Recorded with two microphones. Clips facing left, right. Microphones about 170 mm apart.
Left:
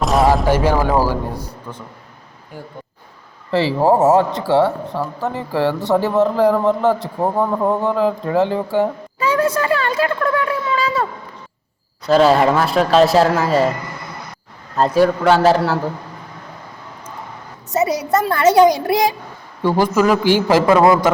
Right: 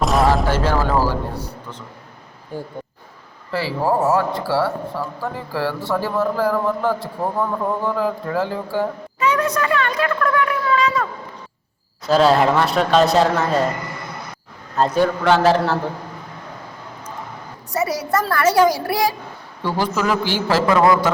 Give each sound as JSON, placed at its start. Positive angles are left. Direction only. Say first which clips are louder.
{"t": 0.0, "sound": "a sound", "louder": "left 2 dB", "side_deg": 0}
{"t": 0.4, "sound": "a sound", "louder": "left 4 dB", "side_deg": 15}
{"t": 3.5, "sound": "speech", "louder": "left 5 dB", "side_deg": 25}
{"t": 7.2, "sound": "speech", "louder": "left 4 dB", "side_deg": 40}
{"t": 7.8, "sound": "speech", "louder": "left 4 dB", "side_deg": 20}
{"t": 12.0, "sound": "speech", "louder": "left 2 dB", "side_deg": 0}
{"t": 14.8, "sound": "speech", "louder": "left 3 dB", "side_deg": 5}
{"t": 17.7, "sound": "speech", "louder": "left 4 dB", "side_deg": 20}
{"t": 20.5, "sound": "speech", "louder": "left 2 dB", "side_deg": 20}